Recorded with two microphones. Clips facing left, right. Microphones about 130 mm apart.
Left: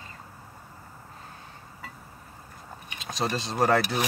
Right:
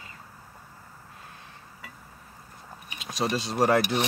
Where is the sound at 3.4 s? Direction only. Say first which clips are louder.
Even; 10° right (ahead or behind).